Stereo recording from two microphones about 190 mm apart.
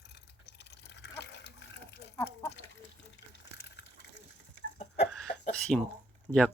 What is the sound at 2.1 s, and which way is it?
Speech, 15° left (ahead or behind).